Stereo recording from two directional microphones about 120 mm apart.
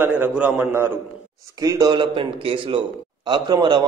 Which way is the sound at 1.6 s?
30° right (ahead or behind).